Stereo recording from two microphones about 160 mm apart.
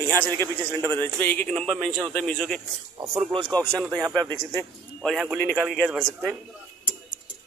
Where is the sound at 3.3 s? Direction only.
30° right (ahead or behind).